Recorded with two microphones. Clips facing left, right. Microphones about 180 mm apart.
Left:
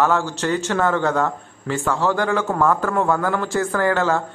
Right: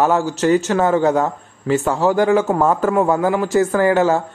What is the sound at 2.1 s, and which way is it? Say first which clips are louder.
A man's voice: right 9 dB; 15° right (ahead or behind).